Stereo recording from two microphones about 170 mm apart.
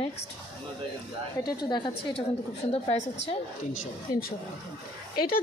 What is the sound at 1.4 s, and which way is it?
Speech, 25° left (ahead or behind).